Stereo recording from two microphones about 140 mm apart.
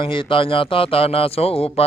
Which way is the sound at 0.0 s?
35° left (ahead or behind).